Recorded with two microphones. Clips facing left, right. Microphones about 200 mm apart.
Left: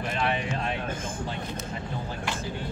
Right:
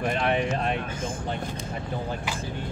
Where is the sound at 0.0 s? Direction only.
50° right (ahead or behind).